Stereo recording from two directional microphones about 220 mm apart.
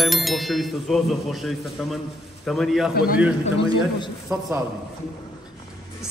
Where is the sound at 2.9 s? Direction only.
45° left (ahead or behind).